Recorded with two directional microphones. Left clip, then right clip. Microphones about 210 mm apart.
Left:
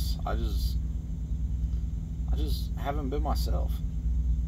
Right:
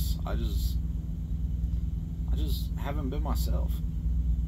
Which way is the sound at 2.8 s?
15° left (ahead or behind).